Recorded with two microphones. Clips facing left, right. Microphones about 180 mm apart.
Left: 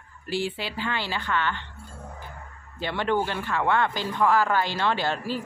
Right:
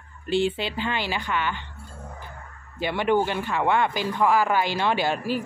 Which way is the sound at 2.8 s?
15° right (ahead or behind).